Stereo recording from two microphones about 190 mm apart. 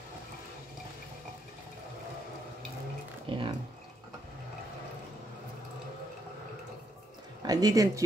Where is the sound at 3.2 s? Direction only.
25° right (ahead or behind).